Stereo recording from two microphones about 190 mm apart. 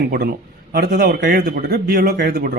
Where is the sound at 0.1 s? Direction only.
55° right (ahead or behind).